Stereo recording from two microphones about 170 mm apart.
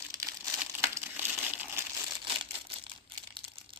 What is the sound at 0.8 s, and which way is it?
Crumpling, 15° right (ahead or behind).